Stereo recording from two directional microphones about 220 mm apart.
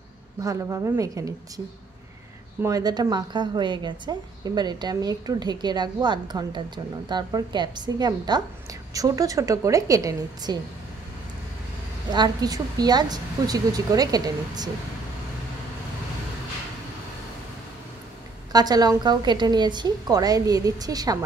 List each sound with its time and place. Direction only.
0.4 s a woman's voice: 15° right (ahead or behind)
2.6 s a woman's voice: 15° right (ahead or behind)
12.1 s a woman's voice: 15° right (ahead or behind)
18.5 s a woman's voice: 15° right (ahead or behind)